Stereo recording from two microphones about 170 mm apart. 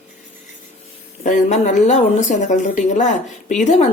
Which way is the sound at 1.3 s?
45° left (ahead or behind).